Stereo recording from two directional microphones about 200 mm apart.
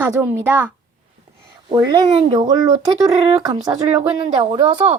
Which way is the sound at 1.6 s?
20° right (ahead or behind).